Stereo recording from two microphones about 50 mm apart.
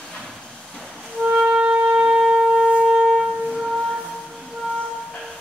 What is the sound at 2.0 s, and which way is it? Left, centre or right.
Shofar, centre.